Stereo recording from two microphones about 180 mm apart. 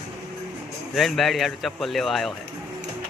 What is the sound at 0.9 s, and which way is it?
Speech, centre (ahead or behind).